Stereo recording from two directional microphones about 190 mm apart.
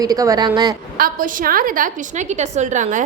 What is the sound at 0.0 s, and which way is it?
Speech, 20° right (ahead or behind).